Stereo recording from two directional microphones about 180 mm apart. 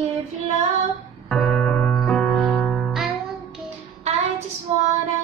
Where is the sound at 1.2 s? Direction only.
5° left (ahead or behind).